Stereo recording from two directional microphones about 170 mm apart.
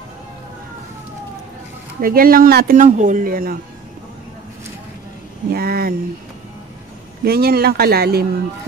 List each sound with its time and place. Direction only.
2.0 s speech: 60° right (ahead or behind)
5.5 s speech: 60° right (ahead or behind)
7.2 s speech: 65° right (ahead or behind)